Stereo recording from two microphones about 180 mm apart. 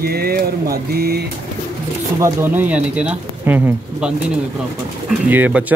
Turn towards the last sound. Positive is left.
turn(degrees=-10)  # may be behind; listen again after turning